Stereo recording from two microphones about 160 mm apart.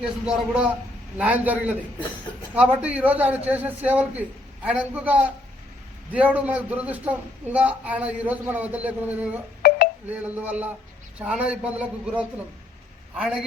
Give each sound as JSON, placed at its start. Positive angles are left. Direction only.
{"t": 0.0, "sound": "a man's voice", "side_deg": -5}
{"t": 6.1, "sound": "a man's voice", "side_deg": -10}
{"t": 9.6, "sound": "a sound", "side_deg": 90}
{"t": 10.1, "sound": "a man's voice", "side_deg": -10}